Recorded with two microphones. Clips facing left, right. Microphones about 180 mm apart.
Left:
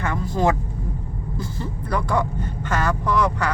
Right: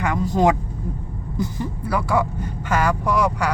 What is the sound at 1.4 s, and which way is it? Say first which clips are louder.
Speech: right 6 dB; 15° right (ahead or behind).